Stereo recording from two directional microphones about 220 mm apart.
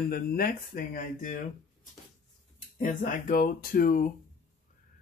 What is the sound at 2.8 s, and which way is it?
Speech, 35° left (ahead or behind).